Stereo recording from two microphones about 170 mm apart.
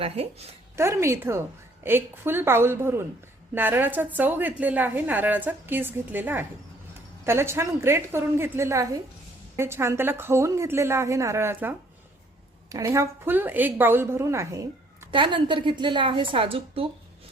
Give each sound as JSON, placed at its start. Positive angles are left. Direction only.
{"t": 0.0, "sound": "a woman's voice", "side_deg": -35}
{"t": 0.8, "sound": "a woman's voice", "side_deg": -15}